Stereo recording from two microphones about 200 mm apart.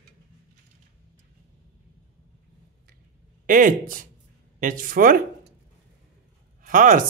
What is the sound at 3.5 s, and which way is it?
Speech, 40° right (ahead or behind).